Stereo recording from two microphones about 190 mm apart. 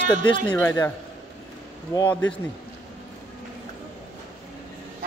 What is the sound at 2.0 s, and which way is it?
Speech, 10° left (ahead or behind).